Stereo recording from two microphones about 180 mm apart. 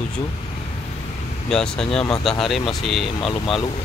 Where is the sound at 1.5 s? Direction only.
5° left (ahead or behind).